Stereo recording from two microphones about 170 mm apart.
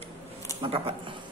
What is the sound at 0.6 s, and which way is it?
Speech, 30° right (ahead or behind).